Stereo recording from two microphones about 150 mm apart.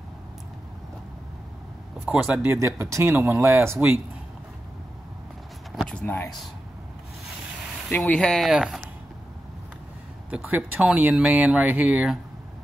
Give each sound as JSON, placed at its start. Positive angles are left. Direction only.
{"t": 2.0, "sound": "speech", "side_deg": -15}
{"t": 5.8, "sound": "a sound", "side_deg": 5}
{"t": 7.9, "sound": "speech", "side_deg": 10}
{"t": 10.3, "sound": "speech", "side_deg": -10}